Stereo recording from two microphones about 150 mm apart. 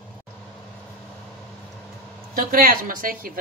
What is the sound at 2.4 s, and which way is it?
A woman's voice, 70° right (ahead or behind).